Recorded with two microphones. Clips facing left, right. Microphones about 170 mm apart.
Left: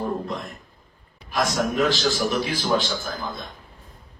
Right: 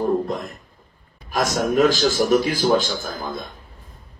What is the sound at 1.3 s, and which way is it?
A man's voice, 45° right (ahead or behind).